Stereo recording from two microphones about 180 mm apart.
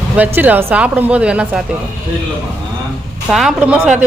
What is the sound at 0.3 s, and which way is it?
A woman's voice, 10° right (ahead or behind).